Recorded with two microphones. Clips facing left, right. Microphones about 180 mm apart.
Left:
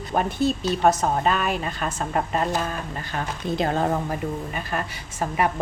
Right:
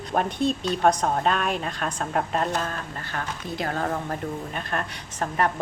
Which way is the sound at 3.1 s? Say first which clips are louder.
Left 5 dB; 20° left (ahead or behind).